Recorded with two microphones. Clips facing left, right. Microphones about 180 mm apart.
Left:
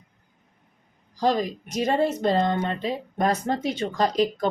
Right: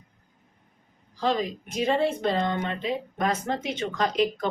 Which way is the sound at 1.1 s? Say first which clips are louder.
Left 3 dB; 40° left (ahead or behind).